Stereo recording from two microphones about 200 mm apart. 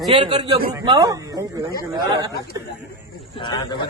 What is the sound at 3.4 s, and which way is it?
Speech, 20° left (ahead or behind).